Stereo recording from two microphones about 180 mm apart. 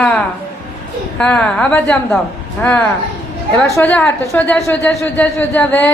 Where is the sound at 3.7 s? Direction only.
10° left (ahead or behind).